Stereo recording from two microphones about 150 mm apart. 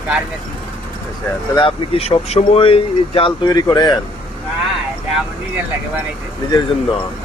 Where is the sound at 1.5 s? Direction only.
35° left (ahead or behind).